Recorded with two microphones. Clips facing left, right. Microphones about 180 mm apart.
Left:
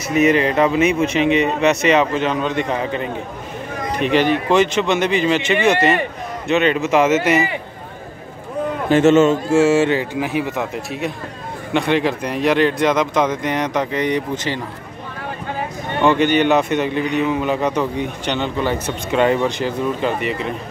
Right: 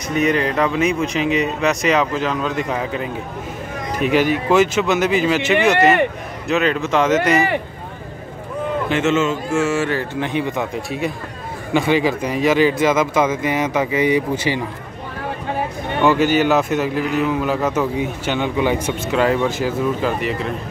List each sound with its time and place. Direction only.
0.1 s a man's voice: centre (ahead or behind)
8.8 s a man's voice: 40° left (ahead or behind)
10.2 s a man's voice: 5° left (ahead or behind)
16.0 s a man's voice: 5° right (ahead or behind)